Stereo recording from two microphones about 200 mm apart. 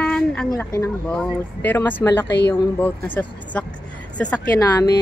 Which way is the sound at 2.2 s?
60° left (ahead or behind).